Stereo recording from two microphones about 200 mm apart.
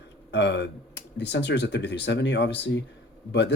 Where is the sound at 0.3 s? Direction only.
60° left (ahead or behind).